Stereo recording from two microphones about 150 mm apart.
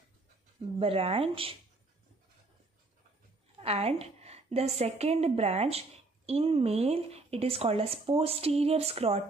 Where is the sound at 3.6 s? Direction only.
40° right (ahead or behind).